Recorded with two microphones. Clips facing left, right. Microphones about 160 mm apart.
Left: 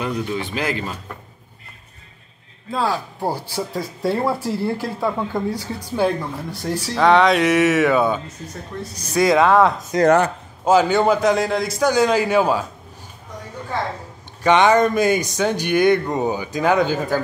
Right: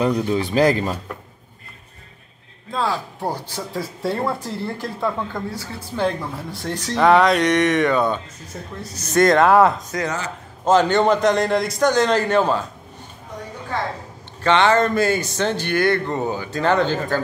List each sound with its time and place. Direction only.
0.0 s speech: 35° right (ahead or behind)
2.7 s speech: centre (ahead or behind)
10.0 s a man's voice: 55° left (ahead or behind)
10.6 s speech: 5° left (ahead or behind)
14.4 s speech: 15° left (ahead or behind)